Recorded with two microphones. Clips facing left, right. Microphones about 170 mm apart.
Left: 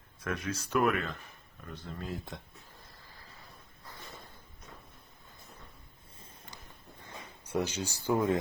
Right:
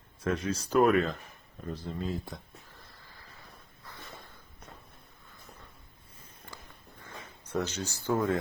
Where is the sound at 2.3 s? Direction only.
Centre (ahead or behind).